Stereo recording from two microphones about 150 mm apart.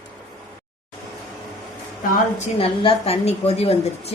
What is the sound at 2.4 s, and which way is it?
Speech, 40° left (ahead or behind).